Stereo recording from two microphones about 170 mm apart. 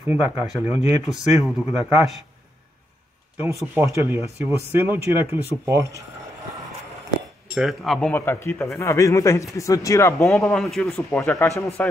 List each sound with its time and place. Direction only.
0.0 s speech: 10° right (ahead or behind)
1.0 s speech: centre (ahead or behind)
3.7 s speech: 15° right (ahead or behind)
7.4 s speech: 5° right (ahead or behind)
8.1 s a man's voice: 15° left (ahead or behind)
10.1 s a man's voice: centre (ahead or behind)